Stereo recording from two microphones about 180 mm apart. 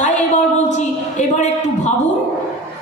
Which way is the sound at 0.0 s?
40° left (ahead or behind).